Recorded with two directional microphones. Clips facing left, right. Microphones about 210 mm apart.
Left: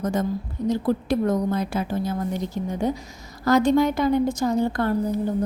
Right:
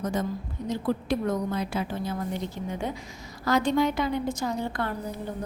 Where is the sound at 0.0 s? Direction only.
45° left (ahead or behind).